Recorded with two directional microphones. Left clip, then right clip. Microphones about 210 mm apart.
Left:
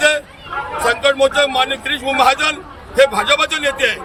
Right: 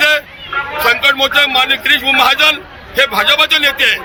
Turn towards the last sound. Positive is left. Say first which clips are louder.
# right 6 dB
turn(degrees=5)  # may be behind; listen again after turning